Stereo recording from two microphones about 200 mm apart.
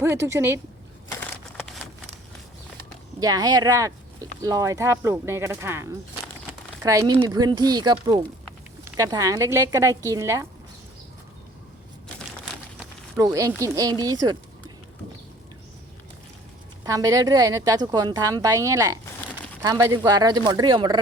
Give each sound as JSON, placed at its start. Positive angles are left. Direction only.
{"t": 0.0, "sound": "a woman's voice", "side_deg": -15}
{"t": 1.2, "sound": "crushing", "side_deg": 5}
{"t": 3.2, "sound": "a woman's voice", "side_deg": -20}
{"t": 13.1, "sound": "a woman's voice", "side_deg": -15}
{"t": 16.8, "sound": "a woman's voice", "side_deg": -15}